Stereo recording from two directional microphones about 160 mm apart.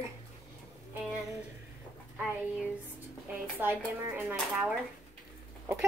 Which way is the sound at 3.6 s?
10° right (ahead or behind).